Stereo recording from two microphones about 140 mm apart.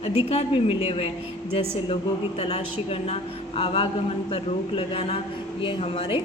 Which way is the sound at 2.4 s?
45° left (ahead or behind).